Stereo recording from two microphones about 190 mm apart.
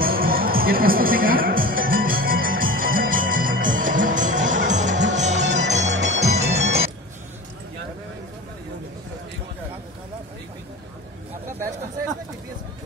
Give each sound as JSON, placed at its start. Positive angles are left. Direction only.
{"t": 0.0, "sound": "music", "side_deg": -50}